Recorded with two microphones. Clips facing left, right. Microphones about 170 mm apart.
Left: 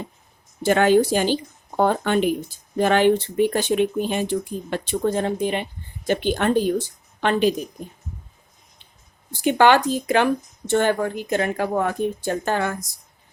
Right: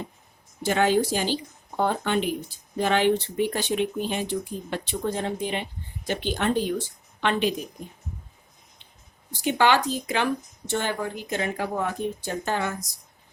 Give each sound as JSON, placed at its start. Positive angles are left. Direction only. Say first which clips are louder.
{"t": 0.6, "sound": "speech", "louder": "left 5 dB", "side_deg": 55}
{"t": 9.4, "sound": "speech", "louder": "left 5 dB", "side_deg": 55}